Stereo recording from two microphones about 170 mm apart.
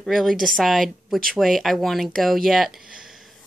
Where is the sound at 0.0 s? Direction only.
Centre (ahead or behind).